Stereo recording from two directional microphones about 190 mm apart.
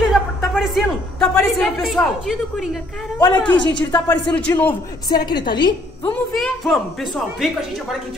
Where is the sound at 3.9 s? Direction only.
10° left (ahead or behind).